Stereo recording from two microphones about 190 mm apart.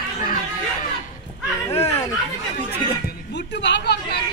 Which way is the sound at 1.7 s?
35° left (ahead or behind).